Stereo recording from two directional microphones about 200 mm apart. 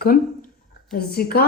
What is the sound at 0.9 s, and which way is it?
Speech, 50° left (ahead or behind).